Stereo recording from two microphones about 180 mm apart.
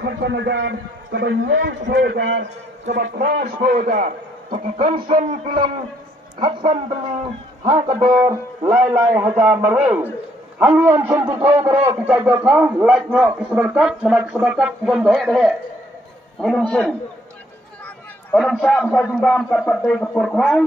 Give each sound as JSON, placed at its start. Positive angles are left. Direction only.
{"t": 0.0, "sound": "a man's voice", "side_deg": -70}
{"t": 3.0, "sound": "a man's voice", "side_deg": -45}
{"t": 5.3, "sound": "a man's voice", "side_deg": -50}
{"t": 6.4, "sound": "a man's voice", "side_deg": -25}
{"t": 17.8, "sound": "chatter", "side_deg": 10}
{"t": 18.6, "sound": "speech", "side_deg": 5}